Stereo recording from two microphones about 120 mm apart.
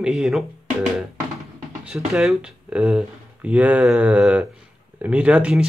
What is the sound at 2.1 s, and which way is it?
Speech, 5° right (ahead or behind).